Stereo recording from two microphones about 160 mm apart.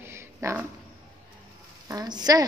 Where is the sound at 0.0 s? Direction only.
15° right (ahead or behind).